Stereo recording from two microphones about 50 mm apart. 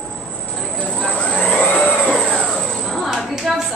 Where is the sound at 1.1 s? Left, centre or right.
Left.